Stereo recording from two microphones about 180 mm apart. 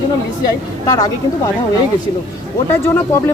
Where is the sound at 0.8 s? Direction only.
20° left (ahead or behind).